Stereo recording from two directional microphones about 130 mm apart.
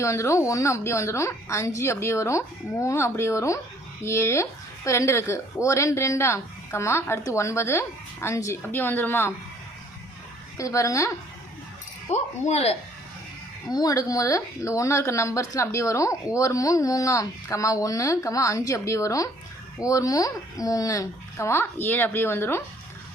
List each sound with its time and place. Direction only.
0.0 s speech: 20° left (ahead or behind)
10.6 s speech: 25° left (ahead or behind)
12.0 s speech: 55° left (ahead or behind)
13.7 s speech: 30° left (ahead or behind)